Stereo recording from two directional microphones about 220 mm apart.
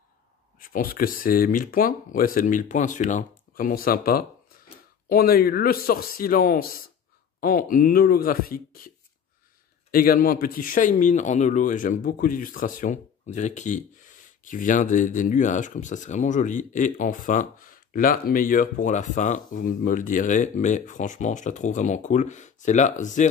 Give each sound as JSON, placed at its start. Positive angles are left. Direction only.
{"t": 0.6, "sound": "a man's voice", "side_deg": 40}